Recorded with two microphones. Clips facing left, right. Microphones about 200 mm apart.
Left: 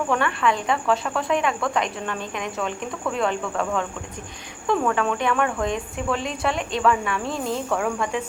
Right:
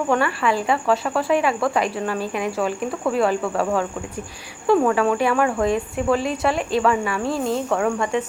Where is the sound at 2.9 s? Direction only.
30° right (ahead or behind).